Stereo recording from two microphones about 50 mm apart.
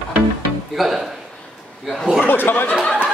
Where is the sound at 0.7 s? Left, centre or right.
Centre.